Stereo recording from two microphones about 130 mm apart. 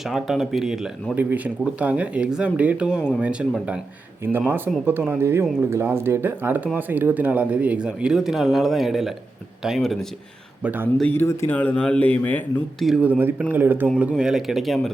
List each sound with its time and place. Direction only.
0.0 s speech: centre (ahead or behind)
10.6 s speech: 15° right (ahead or behind)
11.1 s speech: 20° left (ahead or behind)
12.8 s speech: 5° right (ahead or behind)